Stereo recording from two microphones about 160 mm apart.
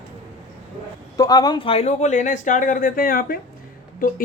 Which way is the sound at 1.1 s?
25° left (ahead or behind).